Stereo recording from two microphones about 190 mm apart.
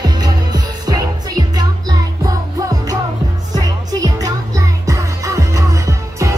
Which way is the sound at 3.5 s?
20° right (ahead or behind).